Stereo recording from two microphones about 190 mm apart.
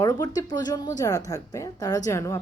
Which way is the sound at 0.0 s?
20° left (ahead or behind).